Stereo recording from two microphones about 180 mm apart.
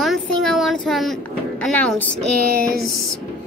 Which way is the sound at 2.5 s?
55° right (ahead or behind).